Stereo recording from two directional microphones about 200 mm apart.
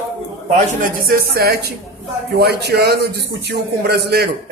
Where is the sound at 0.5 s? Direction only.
45° right (ahead or behind).